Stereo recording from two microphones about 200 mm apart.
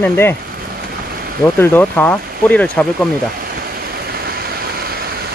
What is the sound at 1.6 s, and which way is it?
Speech, 10° left (ahead or behind).